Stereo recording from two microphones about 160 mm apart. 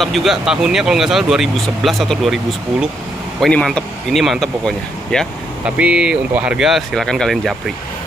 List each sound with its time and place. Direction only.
0.0 s speech: centre (ahead or behind)